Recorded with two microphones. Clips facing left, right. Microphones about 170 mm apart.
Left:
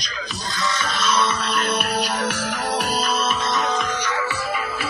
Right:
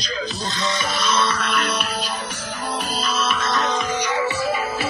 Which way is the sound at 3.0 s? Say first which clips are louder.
Left 1 dB; 50° left (ahead or behind).